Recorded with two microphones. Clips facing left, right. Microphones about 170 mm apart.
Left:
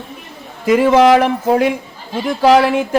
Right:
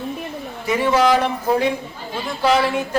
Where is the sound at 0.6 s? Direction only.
90° left.